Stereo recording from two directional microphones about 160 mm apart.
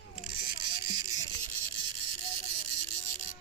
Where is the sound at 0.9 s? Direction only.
25° right (ahead or behind).